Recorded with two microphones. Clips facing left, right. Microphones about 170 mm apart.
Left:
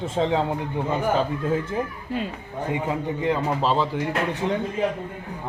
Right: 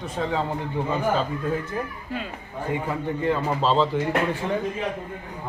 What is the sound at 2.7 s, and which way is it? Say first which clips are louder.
A man's voice: left 1 dB; 15° left (ahead or behind).